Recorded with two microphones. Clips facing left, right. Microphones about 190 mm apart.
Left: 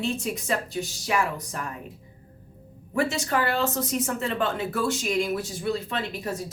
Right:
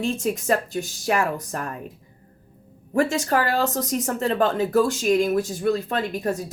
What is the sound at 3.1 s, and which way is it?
A woman's voice, 40° right (ahead or behind).